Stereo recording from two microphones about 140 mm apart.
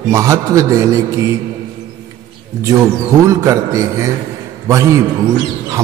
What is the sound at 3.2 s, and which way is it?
A man's voice, 20° right (ahead or behind).